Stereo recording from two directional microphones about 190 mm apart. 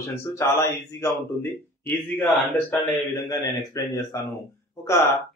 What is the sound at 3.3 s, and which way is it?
A man's voice, 20° left (ahead or behind).